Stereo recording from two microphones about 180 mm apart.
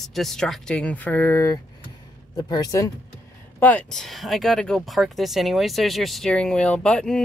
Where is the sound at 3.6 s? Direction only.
10° left (ahead or behind).